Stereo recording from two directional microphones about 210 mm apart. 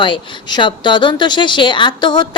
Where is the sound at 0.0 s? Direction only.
25° left (ahead or behind).